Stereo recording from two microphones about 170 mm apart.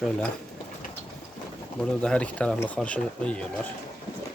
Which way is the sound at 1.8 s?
5° left (ahead or behind).